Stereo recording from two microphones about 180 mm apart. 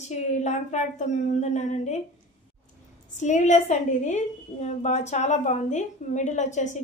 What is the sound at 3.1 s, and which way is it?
A woman's voice, 40° left (ahead or behind).